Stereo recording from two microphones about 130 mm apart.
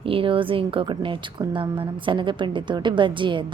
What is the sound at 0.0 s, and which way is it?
A woman's voice, 45° right (ahead or behind).